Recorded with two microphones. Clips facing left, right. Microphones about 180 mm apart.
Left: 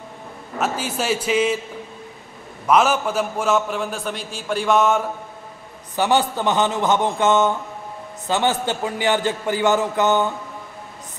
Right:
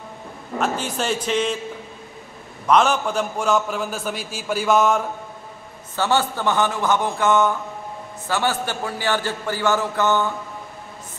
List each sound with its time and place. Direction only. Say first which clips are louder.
0.6 s a man's voice: even; 5° left (ahead or behind)
2.6 s a man's voice: even; 5° left (ahead or behind)
5.9 s a man's voice: left 2 dB; 15° left (ahead or behind)